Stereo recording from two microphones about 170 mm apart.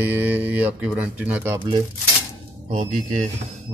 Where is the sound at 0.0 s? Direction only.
10° right (ahead or behind).